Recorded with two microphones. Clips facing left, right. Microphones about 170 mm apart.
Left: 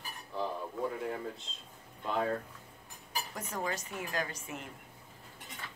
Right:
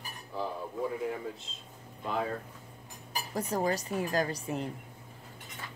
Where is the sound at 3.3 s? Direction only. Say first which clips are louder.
Right 8 dB; 35° right (ahead or behind).